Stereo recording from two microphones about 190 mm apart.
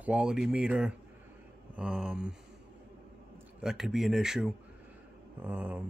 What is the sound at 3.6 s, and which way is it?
Speech, centre (ahead or behind).